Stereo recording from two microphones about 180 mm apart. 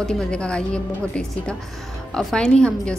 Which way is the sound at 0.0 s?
5° left (ahead or behind).